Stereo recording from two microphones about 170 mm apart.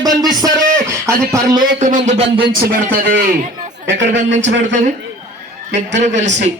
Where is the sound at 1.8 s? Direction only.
45° right (ahead or behind).